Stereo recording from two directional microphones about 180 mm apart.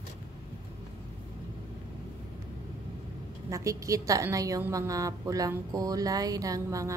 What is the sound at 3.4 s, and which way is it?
A woman's voice, 20° right (ahead or behind).